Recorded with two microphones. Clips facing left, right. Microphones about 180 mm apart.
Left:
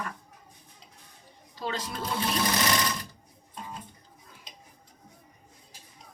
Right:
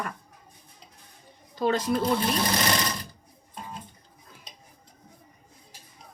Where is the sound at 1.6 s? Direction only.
55° right (ahead or behind).